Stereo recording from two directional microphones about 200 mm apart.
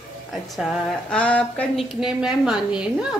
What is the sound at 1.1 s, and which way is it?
A woman's voice, 5° left (ahead or behind).